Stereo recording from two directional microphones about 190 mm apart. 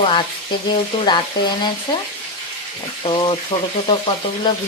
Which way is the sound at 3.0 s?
25° left (ahead or behind).